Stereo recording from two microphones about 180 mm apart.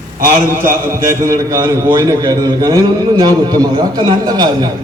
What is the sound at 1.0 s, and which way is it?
A man's voice, 15° right (ahead or behind).